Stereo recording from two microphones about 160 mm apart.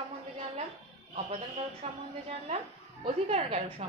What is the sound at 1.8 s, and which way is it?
A woman's voice, 40° right (ahead or behind).